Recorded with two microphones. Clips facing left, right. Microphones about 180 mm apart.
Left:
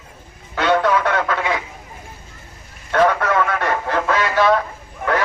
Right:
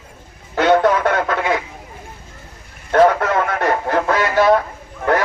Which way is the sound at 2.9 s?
40° right (ahead or behind).